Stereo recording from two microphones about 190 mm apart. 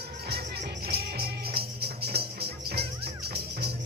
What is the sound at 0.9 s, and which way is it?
Music, 55° right (ahead or behind).